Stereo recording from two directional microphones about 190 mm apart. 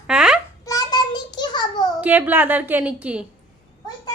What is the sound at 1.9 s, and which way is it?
A woman's voice, 10° right (ahead or behind).